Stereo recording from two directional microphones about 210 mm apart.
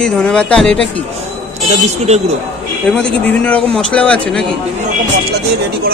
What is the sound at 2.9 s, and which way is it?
A man's voice, 5° left (ahead or behind).